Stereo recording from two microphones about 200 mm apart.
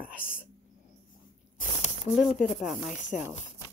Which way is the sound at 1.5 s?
35° left (ahead or behind).